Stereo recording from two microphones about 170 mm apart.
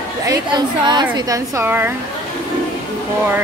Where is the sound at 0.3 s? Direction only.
25° right (ahead or behind).